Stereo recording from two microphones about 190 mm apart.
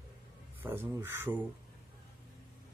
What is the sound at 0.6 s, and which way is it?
Speech, 10° right (ahead or behind).